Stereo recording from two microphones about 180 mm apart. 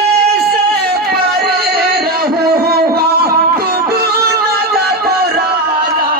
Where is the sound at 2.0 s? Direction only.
60° right (ahead or behind).